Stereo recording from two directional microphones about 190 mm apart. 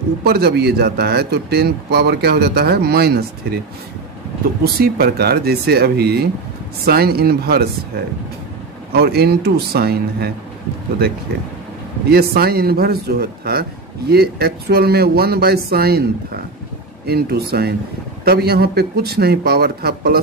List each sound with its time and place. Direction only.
0.2 s speech: 55° right (ahead or behind)
4.7 s speech: 55° right (ahead or behind)
12.1 s speech: 55° right (ahead or behind)